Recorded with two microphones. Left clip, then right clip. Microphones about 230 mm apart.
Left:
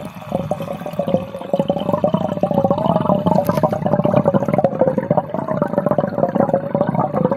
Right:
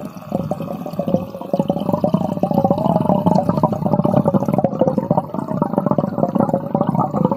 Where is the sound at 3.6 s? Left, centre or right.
Centre.